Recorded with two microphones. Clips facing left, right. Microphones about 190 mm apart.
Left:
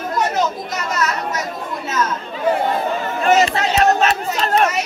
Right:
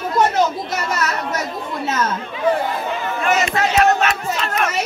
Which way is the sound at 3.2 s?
35° left (ahead or behind).